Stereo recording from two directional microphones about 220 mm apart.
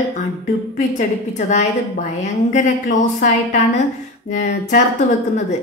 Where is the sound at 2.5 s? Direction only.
35° left (ahead or behind).